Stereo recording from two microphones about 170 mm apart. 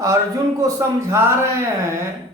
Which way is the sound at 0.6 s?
15° right (ahead or behind).